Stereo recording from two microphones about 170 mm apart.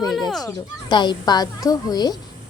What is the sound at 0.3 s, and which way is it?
Speech, centre (ahead or behind).